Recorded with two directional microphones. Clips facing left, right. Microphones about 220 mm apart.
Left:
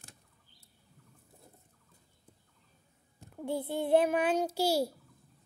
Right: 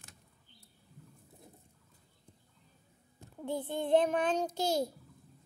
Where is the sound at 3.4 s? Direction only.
10° left (ahead or behind).